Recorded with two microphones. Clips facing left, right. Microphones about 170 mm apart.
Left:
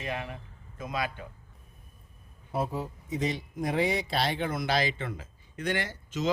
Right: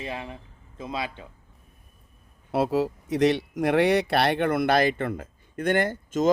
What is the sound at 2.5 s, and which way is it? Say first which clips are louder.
Speech: right 8 dB; 80° right.